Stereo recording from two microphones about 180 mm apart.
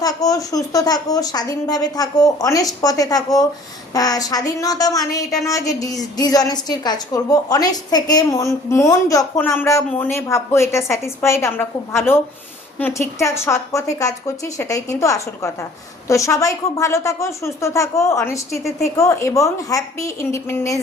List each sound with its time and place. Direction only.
0.0 s a woman's voice: 20° left (ahead or behind)